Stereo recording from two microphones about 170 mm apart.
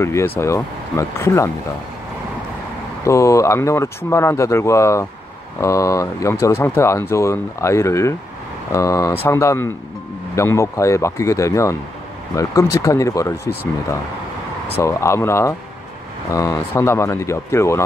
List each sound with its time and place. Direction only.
0.0 s speech: 15° left (ahead or behind)
3.0 s speech: 20° left (ahead or behind)